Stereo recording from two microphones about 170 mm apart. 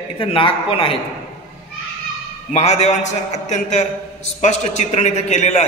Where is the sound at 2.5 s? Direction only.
40° left (ahead or behind).